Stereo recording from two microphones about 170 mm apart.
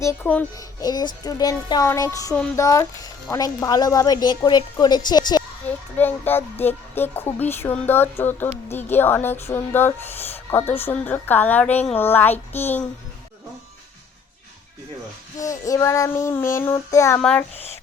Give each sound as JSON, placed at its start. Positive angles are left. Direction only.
{"t": 0.0, "sound": "speech", "side_deg": 15}
{"t": 0.8, "sound": "speech", "side_deg": 25}
{"t": 5.6, "sound": "speech", "side_deg": 10}
{"t": 15.4, "sound": "speech", "side_deg": 20}